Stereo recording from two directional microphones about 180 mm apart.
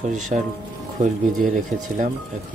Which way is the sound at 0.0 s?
40° right (ahead or behind).